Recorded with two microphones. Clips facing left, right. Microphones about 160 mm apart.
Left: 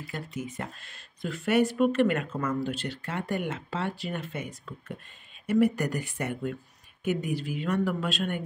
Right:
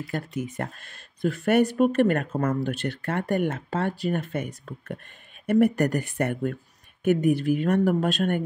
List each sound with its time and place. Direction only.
0.0 s speech: 55° right (ahead or behind)